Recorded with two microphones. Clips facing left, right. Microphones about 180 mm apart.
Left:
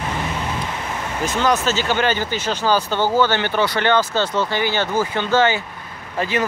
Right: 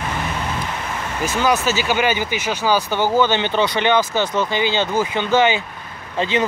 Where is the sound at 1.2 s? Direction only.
5° right (ahead or behind).